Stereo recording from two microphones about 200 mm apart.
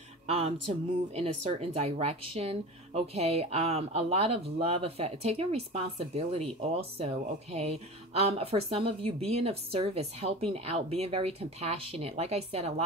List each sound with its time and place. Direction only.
0.3 s speech: 30° right (ahead or behind)